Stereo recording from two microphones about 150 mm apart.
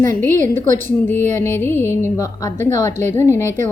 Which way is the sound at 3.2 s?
15° left (ahead or behind).